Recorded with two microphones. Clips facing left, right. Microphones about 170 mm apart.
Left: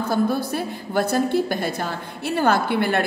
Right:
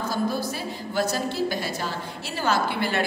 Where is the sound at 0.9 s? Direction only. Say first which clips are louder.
Left 6 dB; 55° left (ahead or behind).